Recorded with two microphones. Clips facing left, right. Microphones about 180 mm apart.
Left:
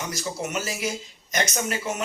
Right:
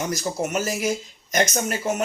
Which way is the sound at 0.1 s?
45° right (ahead or behind).